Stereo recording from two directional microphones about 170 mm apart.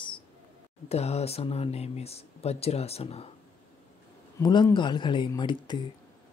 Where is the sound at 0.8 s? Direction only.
40° left (ahead or behind).